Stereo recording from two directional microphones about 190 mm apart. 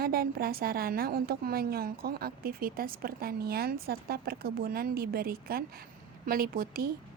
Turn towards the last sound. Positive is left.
turn(degrees=-50)  # may be behind; listen again after turning